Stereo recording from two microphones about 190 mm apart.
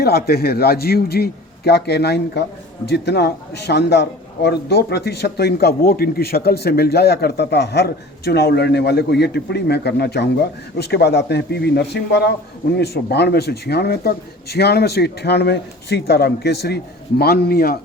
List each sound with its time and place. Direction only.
0.0 s speech: 55° left (ahead or behind)